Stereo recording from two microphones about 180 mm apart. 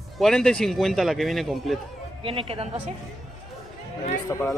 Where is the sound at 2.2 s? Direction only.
30° right (ahead or behind).